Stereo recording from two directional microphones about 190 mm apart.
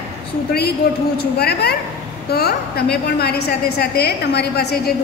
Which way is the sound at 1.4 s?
55° left (ahead or behind).